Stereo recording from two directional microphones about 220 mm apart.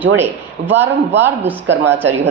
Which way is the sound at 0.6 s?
55° right (ahead or behind).